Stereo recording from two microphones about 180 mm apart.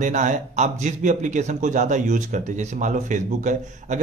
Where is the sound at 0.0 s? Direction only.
45° right (ahead or behind).